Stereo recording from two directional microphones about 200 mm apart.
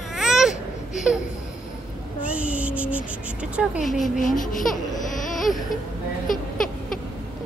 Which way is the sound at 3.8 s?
Centre (ahead or behind).